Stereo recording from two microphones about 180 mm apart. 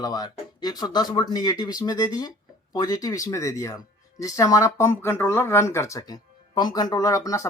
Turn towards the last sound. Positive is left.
turn(degrees=15)  # may be behind; listen again after turning